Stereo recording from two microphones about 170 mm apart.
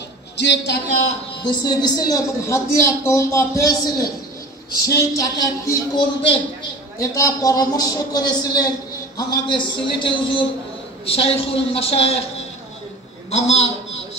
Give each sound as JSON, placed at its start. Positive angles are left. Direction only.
{"t": 0.4, "sound": "speech", "side_deg": 90}
{"t": 1.4, "sound": "a man's voice", "side_deg": 25}
{"t": 13.3, "sound": "a woman's voice", "side_deg": 40}